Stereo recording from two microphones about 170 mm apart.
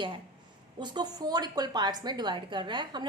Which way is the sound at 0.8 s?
25° right (ahead or behind).